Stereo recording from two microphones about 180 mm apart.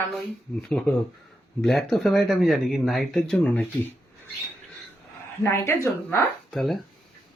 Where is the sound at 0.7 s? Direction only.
5° left (ahead or behind).